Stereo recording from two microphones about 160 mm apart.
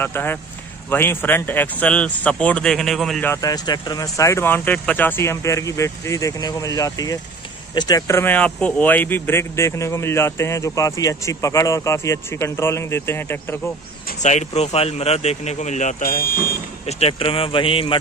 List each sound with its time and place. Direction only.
0.0 s speech: 15° left (ahead or behind)
3.3 s speech: 25° left (ahead or behind)
14.2 s speech: 45° left (ahead or behind)
16.8 s speech: 40° left (ahead or behind)